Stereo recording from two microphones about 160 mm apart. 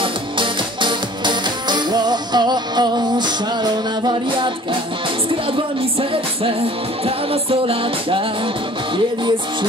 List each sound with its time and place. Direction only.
0.0 s music: 30° right (ahead or behind)